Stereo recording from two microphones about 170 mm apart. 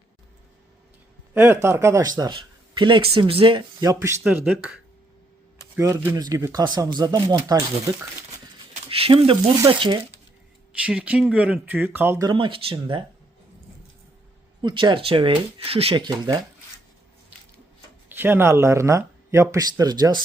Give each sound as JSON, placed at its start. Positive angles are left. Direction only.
{"t": 1.3, "sound": "a man's voice", "side_deg": -15}
{"t": 4.2, "sound": "speech", "side_deg": -5}
{"t": 5.7, "sound": "speech", "side_deg": -15}
{"t": 8.9, "sound": "speech", "side_deg": -35}
{"t": 10.7, "sound": "speech", "side_deg": -5}
{"t": 12.3, "sound": "speech", "side_deg": -30}
{"t": 14.6, "sound": "speech", "side_deg": -25}
{"t": 18.1, "sound": "speech", "side_deg": -15}